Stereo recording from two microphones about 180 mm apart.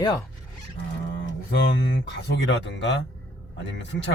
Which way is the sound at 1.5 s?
80° left.